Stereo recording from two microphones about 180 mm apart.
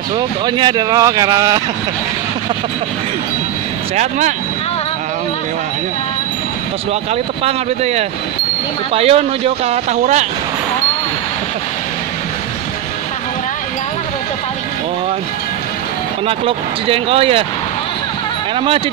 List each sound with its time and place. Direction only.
0.5 s speech: 25° right (ahead or behind)
3.9 s speech: 40° right (ahead or behind)
7.4 s speech: 35° right (ahead or behind)
16.3 s speech: 30° right (ahead or behind)